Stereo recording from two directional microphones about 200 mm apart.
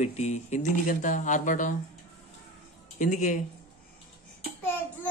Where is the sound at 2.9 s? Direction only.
35° left (ahead or behind).